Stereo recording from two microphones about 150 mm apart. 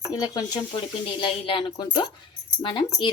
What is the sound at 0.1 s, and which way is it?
Speech, 25° left (ahead or behind).